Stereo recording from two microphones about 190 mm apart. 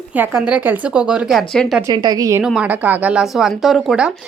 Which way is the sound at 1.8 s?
20° right (ahead or behind).